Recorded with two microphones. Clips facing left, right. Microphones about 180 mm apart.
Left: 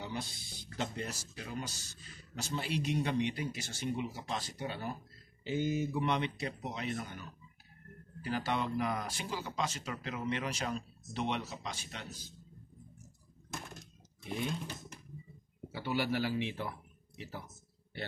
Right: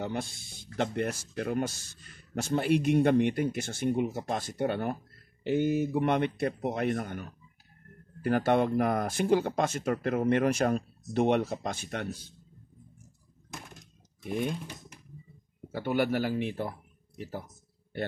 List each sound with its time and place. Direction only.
0.0 s speech: 55° right (ahead or behind)
14.2 s speech: 55° right (ahead or behind)
15.7 s speech: 50° right (ahead or behind)